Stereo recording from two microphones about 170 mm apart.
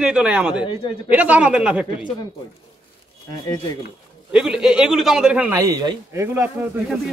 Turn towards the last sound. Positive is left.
turn(degrees=-15)  # may be behind; listen again after turning